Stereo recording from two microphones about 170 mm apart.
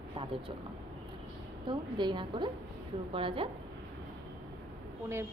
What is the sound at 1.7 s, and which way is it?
A woman's voice, 25° right (ahead or behind).